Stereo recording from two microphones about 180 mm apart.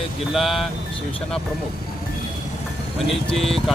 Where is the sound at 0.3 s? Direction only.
Centre (ahead or behind).